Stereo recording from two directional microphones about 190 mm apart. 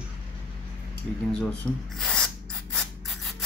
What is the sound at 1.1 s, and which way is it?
Speech, centre (ahead or behind).